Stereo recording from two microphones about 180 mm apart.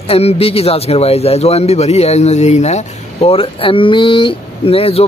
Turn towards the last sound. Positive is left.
turn(degrees=30)  # may be behind; listen again after turning